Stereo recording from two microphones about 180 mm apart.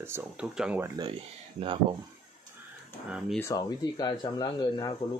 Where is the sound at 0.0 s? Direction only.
10° right (ahead or behind).